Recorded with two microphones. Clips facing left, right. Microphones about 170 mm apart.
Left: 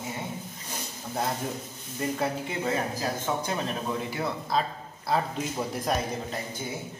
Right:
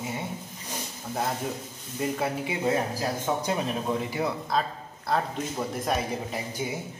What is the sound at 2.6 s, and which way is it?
Speech, 15° right (ahead or behind).